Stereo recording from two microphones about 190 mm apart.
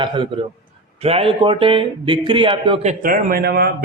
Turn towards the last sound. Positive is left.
turn(degrees=-55)  # may be behind; listen again after turning